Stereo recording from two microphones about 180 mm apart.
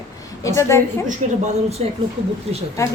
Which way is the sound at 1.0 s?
40° right (ahead or behind).